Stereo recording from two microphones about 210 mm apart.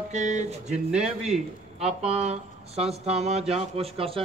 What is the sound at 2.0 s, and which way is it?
Speech, 30° right (ahead or behind).